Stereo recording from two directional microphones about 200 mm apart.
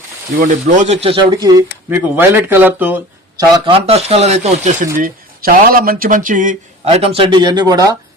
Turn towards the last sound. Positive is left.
turn(degrees=-20)  # may be behind; listen again after turning